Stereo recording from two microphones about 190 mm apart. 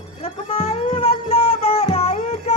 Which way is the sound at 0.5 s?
30° left (ahead or behind).